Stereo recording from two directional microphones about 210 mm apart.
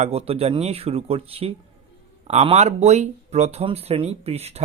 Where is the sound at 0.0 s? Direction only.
30° right (ahead or behind).